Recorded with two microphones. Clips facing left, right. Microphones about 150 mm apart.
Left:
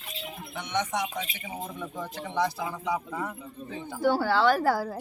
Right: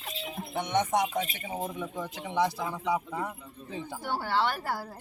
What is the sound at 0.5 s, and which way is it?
Speech, 45° right (ahead or behind).